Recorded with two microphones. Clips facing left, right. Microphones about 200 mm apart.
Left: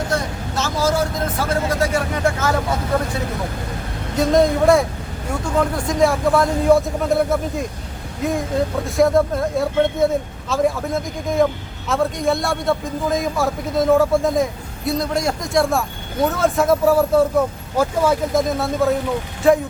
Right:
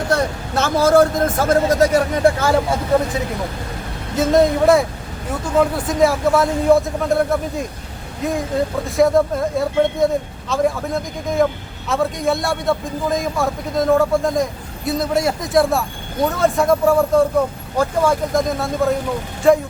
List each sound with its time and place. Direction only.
0.1 s speech: 60° right (ahead or behind); by 2.6 s 35° right (ahead or behind)
4.2 s a man's voice: centre (ahead or behind)